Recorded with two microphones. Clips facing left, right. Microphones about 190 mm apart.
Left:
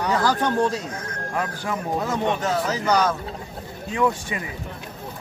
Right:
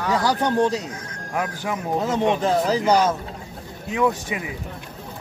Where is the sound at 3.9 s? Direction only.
10° right (ahead or behind).